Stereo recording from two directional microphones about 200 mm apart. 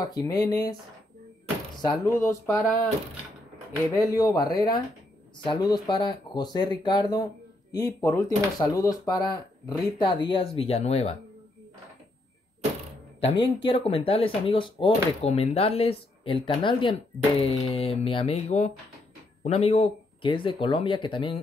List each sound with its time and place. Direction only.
0.0 s speech: 20° left (ahead or behind)
2.2 s speech: 10° left (ahead or behind)
3.9 s speech: 15° left (ahead or behind)
13.2 s speech: 25° left (ahead or behind)